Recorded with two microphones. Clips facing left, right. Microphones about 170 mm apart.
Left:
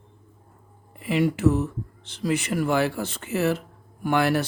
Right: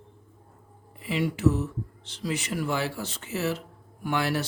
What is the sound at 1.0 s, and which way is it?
Speech, 55° left (ahead or behind).